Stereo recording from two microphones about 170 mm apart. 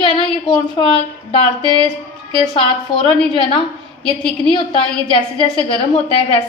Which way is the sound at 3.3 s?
30° left (ahead or behind).